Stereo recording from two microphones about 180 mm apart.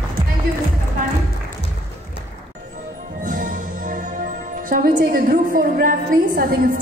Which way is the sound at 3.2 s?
45° right (ahead or behind).